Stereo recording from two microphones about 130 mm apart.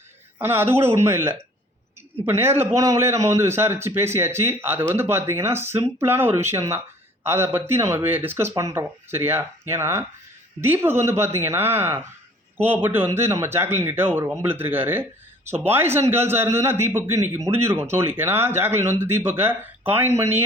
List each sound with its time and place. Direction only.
0.3 s a man's voice: 15° right (ahead or behind)